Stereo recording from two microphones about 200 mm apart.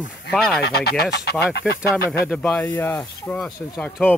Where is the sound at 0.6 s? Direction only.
55° left (ahead or behind).